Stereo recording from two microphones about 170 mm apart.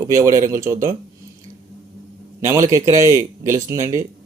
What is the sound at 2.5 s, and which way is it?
Speech, 20° right (ahead or behind).